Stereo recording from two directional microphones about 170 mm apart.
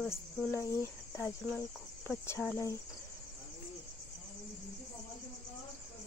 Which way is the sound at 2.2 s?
10° left (ahead or behind).